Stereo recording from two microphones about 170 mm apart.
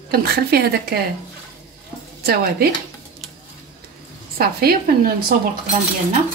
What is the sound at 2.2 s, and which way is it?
Speech, 65° right (ahead or behind).